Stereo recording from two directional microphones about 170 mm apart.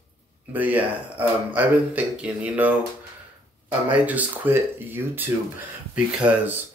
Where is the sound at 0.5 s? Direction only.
10° right (ahead or behind).